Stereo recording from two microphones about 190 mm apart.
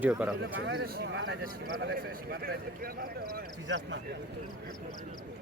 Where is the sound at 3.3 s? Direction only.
75° right (ahead or behind).